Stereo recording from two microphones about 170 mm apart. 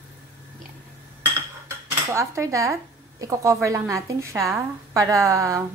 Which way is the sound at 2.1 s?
15° right (ahead or behind).